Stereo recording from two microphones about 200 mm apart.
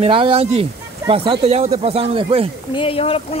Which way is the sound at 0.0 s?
25° right (ahead or behind).